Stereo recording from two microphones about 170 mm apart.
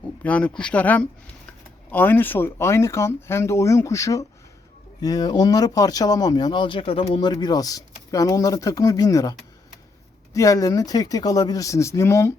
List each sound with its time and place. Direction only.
0.2 s speech: 10° left (ahead or behind)
10.3 s speech: 20° left (ahead or behind)